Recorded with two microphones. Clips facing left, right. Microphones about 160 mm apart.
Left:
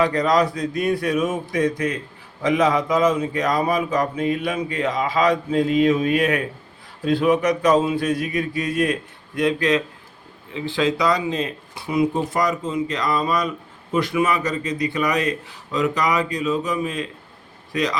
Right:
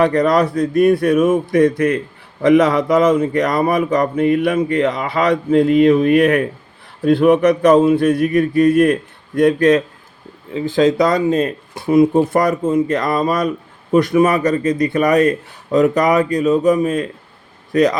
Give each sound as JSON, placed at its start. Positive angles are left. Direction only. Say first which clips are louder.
{"t": 0.0, "sound": "speech", "louder": "right 5 dB", "side_deg": -60}